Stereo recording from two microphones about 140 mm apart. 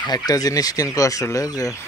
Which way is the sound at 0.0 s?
30° left (ahead or behind).